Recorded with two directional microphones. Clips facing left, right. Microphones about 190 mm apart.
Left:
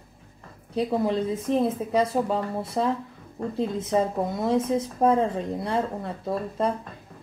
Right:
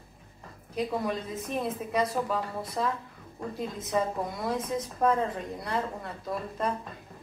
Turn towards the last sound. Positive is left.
turn(degrees=30)  # may be behind; listen again after turning